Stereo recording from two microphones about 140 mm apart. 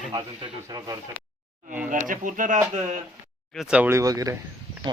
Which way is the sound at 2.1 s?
70° right (ahead or behind).